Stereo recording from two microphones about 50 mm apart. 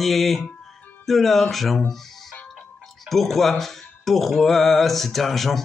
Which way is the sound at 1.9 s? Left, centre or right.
Centre.